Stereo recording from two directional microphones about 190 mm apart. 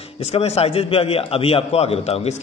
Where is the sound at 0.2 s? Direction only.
35° left (ahead or behind).